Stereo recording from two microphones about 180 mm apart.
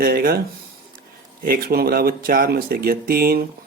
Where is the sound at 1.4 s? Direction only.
55° right (ahead or behind).